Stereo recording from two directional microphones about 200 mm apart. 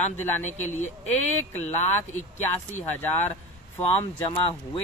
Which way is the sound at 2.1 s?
35° left (ahead or behind).